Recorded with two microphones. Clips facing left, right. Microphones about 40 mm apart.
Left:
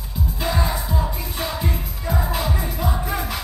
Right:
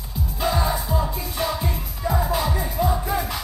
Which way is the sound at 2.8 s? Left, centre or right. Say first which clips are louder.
Right 2 dB; left.